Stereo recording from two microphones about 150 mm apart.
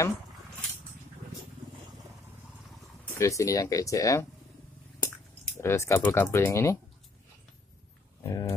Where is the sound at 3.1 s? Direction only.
20° left (ahead or behind).